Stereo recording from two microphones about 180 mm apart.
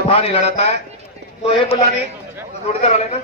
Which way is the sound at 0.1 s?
35° left (ahead or behind).